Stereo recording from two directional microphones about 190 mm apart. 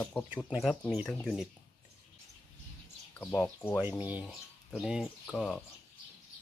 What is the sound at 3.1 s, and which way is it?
Speech, 10° left (ahead or behind).